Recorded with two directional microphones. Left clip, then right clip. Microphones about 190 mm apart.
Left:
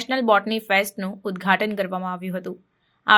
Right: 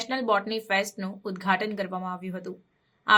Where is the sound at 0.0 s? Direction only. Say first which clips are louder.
Left 6 dB; 35° left (ahead or behind).